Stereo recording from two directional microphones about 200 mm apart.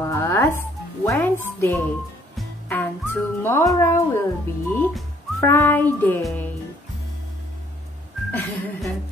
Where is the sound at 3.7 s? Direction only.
15° left (ahead or behind).